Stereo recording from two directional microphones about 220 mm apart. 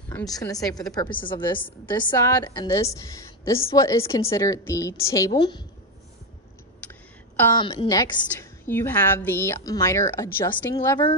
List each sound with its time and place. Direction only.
0.4 s a woman's voice: 15° left (ahead or behind)
6.9 s a sound: 10° left (ahead or behind)
7.5 s a woman's voice: 20° left (ahead or behind)